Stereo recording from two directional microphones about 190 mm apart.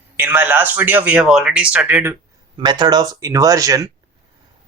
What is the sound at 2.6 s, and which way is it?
Speech, 20° right (ahead or behind).